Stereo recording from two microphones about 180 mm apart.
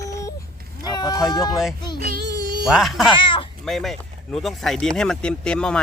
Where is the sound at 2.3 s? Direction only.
65° right (ahead or behind).